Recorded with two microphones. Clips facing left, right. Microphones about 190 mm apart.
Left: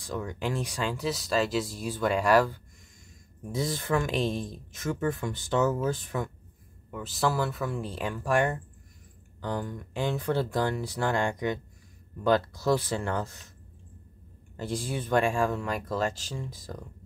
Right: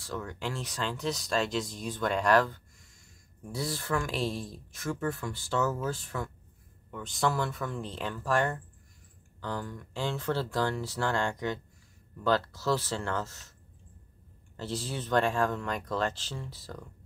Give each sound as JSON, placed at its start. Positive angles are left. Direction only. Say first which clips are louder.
{"t": 0.0, "sound": "speech", "louder": "left 4 dB", "side_deg": 15}
{"t": 3.4, "sound": "speech", "louder": "left 4 dB", "side_deg": 20}
{"t": 6.9, "sound": "speech", "louder": "left 2 dB", "side_deg": 5}
{"t": 14.6, "sound": "speech", "louder": "left 3 dB", "side_deg": 15}